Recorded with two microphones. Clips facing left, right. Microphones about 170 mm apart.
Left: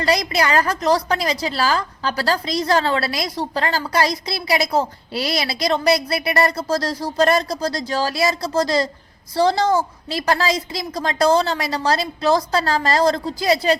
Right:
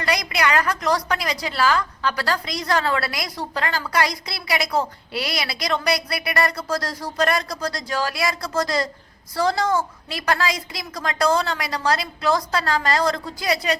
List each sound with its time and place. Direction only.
0.0 s a woman's voice: 30° left (ahead or behind)